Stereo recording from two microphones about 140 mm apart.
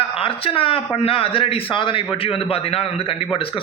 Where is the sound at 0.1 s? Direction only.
40° left (ahead or behind).